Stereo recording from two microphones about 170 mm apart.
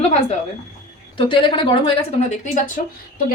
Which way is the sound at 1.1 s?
30° left (ahead or behind).